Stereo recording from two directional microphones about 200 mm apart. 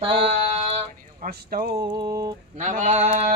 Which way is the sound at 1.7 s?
20° right (ahead or behind).